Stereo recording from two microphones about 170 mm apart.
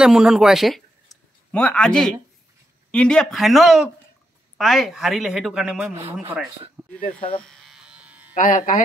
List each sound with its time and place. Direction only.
0.0 s a woman's voice: 5° right (ahead or behind)
7.1 s speech: 10° left (ahead or behind)
7.4 s electric shaver: centre (ahead or behind)
8.4 s speech: 50° left (ahead or behind)